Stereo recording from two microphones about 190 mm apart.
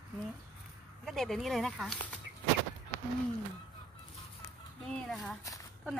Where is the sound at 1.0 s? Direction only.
Centre (ahead or behind).